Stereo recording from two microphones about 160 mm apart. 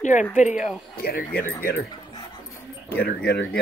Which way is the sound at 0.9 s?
70° left (ahead or behind).